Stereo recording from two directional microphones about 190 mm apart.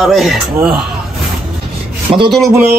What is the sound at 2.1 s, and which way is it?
Music, 25° right (ahead or behind).